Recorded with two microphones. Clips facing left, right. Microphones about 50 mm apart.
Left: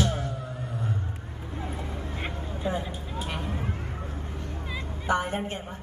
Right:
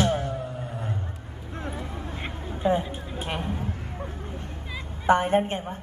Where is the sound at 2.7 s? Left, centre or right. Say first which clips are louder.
Right 6 dB; right.